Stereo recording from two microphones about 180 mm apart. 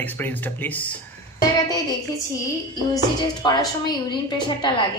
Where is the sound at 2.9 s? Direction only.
25° left (ahead or behind).